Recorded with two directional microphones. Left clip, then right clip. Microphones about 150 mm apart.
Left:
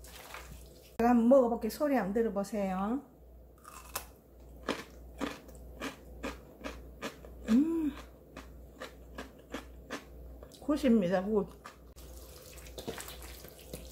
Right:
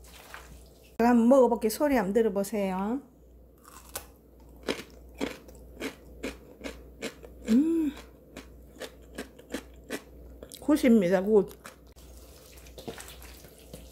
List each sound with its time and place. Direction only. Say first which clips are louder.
1.0 s speech: right 4 dB; 85° right
5.2 s a sound: right 4 dB; 40° right (ahead or behind); by 10.0 s 55° right (ahead or behind)
10.5 s speech: right 6 dB; 65° right (ahead or behind)